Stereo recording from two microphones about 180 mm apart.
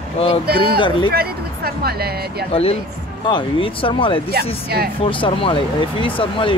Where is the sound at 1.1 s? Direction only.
60° right (ahead or behind).